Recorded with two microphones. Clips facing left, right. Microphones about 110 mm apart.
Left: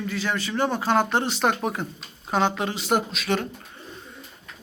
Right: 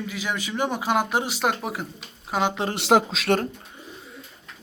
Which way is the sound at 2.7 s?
90° right.